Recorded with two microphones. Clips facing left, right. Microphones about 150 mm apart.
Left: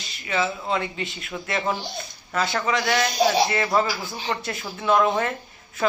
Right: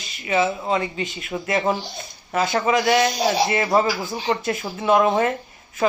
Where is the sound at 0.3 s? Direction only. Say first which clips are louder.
Right 4 dB; 20° right (ahead or behind).